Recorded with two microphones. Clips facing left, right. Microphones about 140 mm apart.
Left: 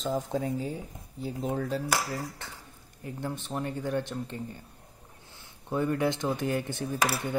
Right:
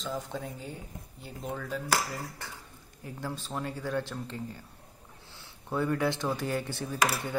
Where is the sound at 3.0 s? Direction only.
20° left (ahead or behind).